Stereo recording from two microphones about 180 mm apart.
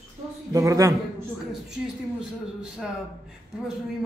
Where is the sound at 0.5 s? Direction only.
20° right (ahead or behind).